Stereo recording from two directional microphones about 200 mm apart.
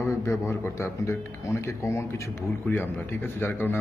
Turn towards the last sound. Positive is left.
turn(degrees=10)  # may be behind; listen again after turning